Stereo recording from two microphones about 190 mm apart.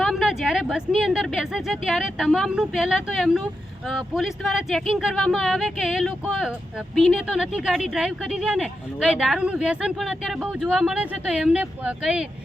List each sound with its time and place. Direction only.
0.0 s speech: centre (ahead or behind)